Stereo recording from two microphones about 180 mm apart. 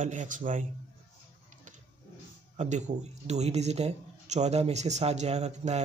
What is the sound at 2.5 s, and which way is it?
Speech, 40° right (ahead or behind).